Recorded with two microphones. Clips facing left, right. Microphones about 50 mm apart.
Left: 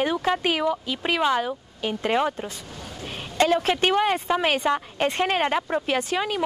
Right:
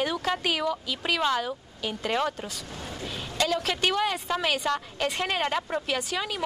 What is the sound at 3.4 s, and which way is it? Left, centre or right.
Speech, left.